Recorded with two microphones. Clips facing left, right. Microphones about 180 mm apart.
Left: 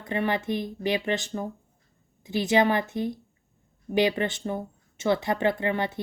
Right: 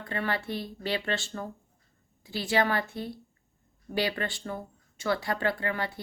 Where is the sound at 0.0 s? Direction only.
20° left (ahead or behind).